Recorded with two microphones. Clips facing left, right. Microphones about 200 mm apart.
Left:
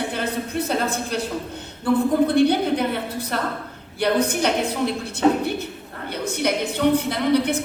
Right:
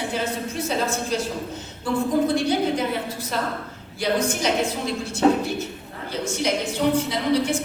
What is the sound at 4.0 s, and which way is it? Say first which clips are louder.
Speech: left 3 dB; 60° left (ahead or behind).